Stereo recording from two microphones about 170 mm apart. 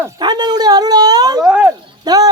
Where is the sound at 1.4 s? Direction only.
5° right (ahead or behind).